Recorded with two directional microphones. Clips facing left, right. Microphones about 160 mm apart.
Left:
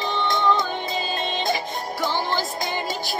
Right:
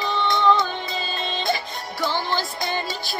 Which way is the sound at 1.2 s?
15° left (ahead or behind).